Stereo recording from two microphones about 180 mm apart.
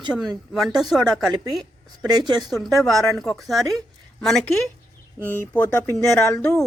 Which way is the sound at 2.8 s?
Centre (ahead or behind).